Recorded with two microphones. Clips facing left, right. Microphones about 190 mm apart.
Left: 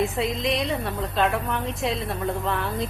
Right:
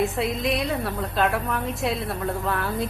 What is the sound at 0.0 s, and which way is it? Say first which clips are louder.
A woman's voice: even; centre (ahead or behind).